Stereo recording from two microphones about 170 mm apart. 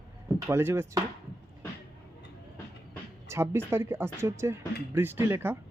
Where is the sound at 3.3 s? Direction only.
15° right (ahead or behind).